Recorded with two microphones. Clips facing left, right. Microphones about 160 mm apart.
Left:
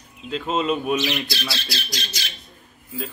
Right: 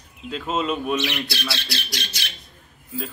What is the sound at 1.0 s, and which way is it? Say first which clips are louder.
A man's voice: left 1 dB; 60° right (ahead or behind).